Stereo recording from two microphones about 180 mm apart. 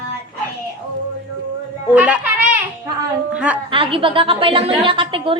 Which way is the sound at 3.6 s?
30° right (ahead or behind).